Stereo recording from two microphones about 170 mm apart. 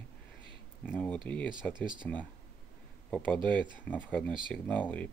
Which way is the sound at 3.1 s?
5° left (ahead or behind).